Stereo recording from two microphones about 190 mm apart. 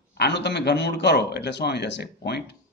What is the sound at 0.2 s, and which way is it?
A man's voice, 65° left (ahead or behind).